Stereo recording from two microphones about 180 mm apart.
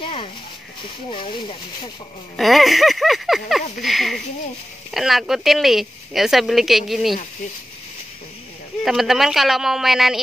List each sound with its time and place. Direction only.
0.0 s speech: 30° left (ahead or behind)
2.3 s speech: centre (ahead or behind)
8.8 s speech: centre (ahead or behind)